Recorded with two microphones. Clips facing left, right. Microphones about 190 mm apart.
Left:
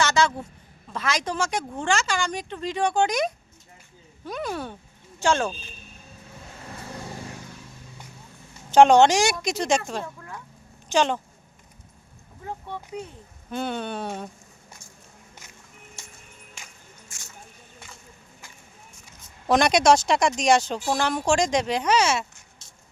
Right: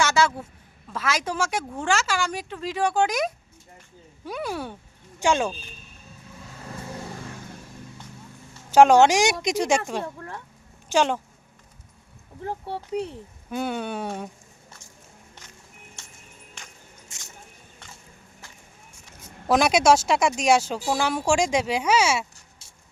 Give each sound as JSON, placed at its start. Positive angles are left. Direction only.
{"t": 0.0, "sound": "a woman's voice", "side_deg": -10}
{"t": 8.7, "sound": "speech", "side_deg": -5}
{"t": 12.5, "sound": "speech", "side_deg": -35}
{"t": 13.5, "sound": "speech", "side_deg": -10}
{"t": 17.1, "sound": "a sound", "side_deg": -20}
{"t": 19.2, "sound": "speech", "side_deg": -5}